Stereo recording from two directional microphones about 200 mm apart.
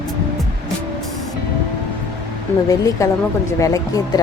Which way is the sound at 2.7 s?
15° left (ahead or behind).